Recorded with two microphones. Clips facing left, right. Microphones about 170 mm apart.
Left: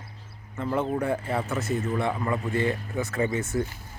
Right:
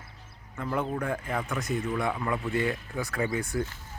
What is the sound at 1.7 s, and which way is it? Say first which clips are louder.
Speech: left 1 dB; 40° left (ahead or behind).